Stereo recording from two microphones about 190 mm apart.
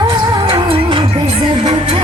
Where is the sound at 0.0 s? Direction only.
25° right (ahead or behind).